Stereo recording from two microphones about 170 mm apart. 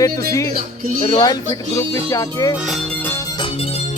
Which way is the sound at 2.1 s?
20° left (ahead or behind).